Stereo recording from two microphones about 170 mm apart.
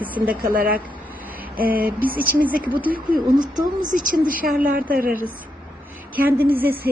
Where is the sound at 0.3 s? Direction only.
55° right (ahead or behind).